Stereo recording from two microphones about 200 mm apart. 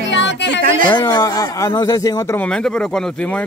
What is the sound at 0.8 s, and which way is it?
Speech, 20° left (ahead or behind).